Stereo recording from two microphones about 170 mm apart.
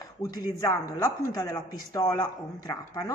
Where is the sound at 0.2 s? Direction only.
25° left (ahead or behind).